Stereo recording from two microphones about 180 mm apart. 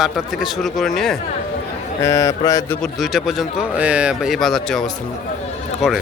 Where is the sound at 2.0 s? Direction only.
15° left (ahead or behind).